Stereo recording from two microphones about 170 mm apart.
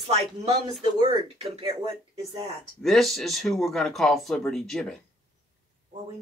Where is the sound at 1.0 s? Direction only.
30° right (ahead or behind).